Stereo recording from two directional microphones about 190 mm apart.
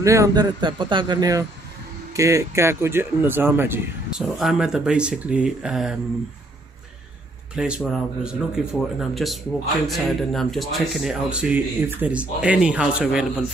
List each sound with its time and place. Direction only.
0.0 s a man's voice: 15° right (ahead or behind)
7.5 s speech: 5° right (ahead or behind)